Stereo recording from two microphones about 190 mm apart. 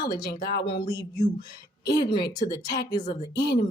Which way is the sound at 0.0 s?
20° left (ahead or behind).